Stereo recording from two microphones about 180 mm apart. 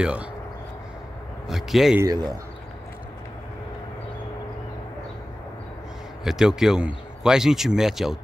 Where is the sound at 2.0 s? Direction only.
20° right (ahead or behind).